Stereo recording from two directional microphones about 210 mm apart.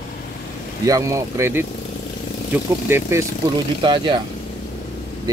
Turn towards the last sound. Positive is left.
turn(degrees=-20)  # may be behind; listen again after turning